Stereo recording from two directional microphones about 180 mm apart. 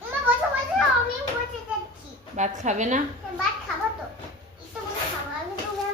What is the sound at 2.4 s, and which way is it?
Speech, 40° right (ahead or behind).